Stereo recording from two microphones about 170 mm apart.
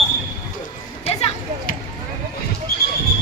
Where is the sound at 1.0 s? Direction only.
40° left (ahead or behind).